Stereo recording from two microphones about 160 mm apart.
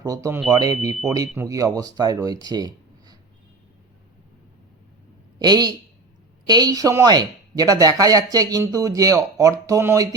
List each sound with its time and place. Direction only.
0.0 s speech: 20° right (ahead or behind)
5.4 s speech: 25° right (ahead or behind)